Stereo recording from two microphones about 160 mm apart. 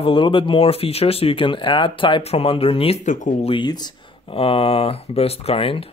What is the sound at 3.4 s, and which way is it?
Speech, 30° left (ahead or behind).